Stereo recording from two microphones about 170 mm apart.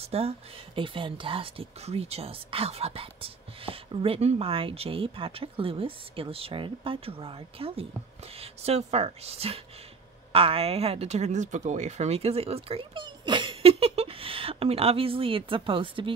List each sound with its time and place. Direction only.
0.0 s speech: 35° right (ahead or behind)